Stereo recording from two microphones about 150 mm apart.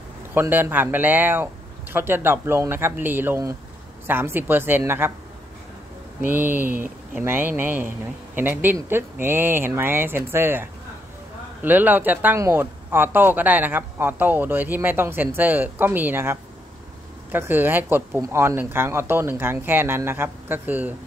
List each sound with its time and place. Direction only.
0.3 s speech: 15° right (ahead or behind)
6.2 s speech: 10° right (ahead or behind)